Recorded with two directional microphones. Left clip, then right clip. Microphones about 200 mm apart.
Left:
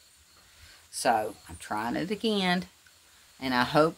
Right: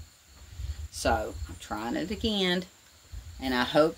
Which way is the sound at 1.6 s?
35° left (ahead or behind).